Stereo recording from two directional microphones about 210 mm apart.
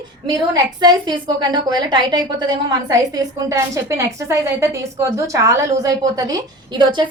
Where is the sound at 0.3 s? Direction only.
20° right (ahead or behind).